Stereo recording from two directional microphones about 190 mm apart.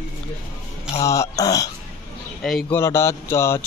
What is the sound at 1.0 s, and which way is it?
Speech, 15° left (ahead or behind).